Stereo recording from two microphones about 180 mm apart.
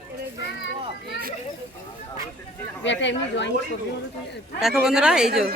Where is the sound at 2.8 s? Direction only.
80° left.